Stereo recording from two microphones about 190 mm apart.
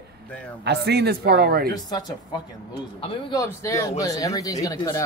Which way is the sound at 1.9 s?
20° left (ahead or behind).